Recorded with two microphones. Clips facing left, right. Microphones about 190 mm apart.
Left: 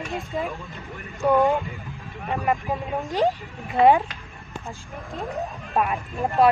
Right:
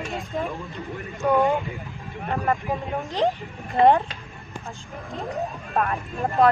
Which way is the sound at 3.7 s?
Centre (ahead or behind).